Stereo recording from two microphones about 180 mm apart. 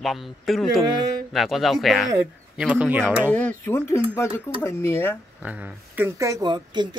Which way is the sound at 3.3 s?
10° left (ahead or behind).